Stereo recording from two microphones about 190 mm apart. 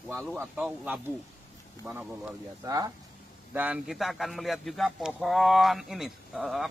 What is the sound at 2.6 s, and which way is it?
Speech, 20° right (ahead or behind).